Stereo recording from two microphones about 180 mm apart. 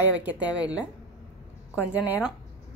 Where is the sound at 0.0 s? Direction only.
10° right (ahead or behind).